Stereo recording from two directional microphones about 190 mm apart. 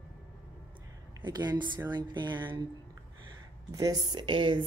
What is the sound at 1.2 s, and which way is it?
Speech, 25° right (ahead or behind).